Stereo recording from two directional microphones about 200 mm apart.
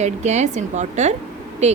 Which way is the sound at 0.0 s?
35° right (ahead or behind).